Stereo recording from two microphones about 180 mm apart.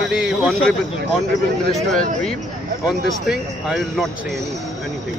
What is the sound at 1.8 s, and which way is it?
Speech, 5° left (ahead or behind).